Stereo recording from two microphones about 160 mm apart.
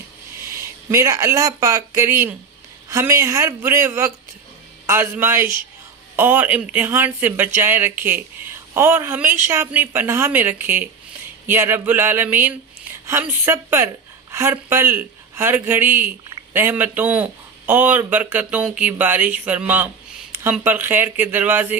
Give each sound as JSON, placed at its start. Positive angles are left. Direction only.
{"t": 0.4, "sound": "speech", "side_deg": -20}